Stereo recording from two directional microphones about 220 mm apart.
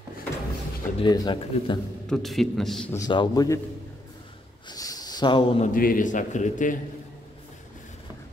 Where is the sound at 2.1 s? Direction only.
Centre (ahead or behind).